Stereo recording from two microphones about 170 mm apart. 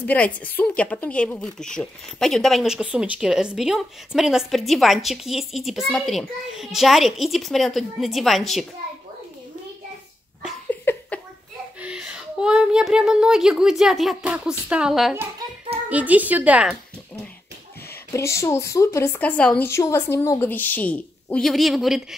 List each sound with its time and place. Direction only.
0.0 s a woman's voice: 10° left (ahead or behind)
10.7 s a sound: 10° left (ahead or behind)
11.8 s a woman's voice: 5° right (ahead or behind)
18.1 s a woman's voice: 15° left (ahead or behind); by 22.0 s centre (ahead or behind)